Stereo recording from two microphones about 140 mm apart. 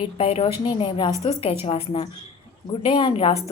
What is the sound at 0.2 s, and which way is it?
A woman's voice, 45° left (ahead or behind).